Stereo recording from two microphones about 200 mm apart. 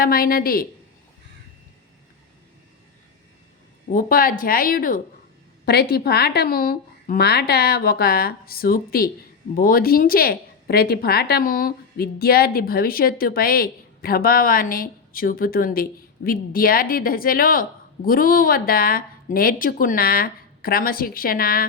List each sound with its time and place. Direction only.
0.0 s a woman's voice: 45° left (ahead or behind)
3.8 s a woman's voice: 45° left (ahead or behind)